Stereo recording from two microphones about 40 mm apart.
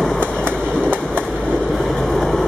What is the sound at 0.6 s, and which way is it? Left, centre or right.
Train, left.